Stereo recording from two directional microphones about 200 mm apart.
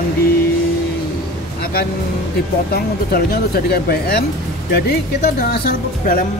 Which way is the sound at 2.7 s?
50° left (ahead or behind).